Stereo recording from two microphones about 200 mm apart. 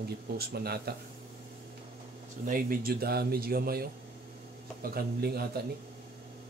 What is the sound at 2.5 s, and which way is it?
Speech, 45° right (ahead or behind).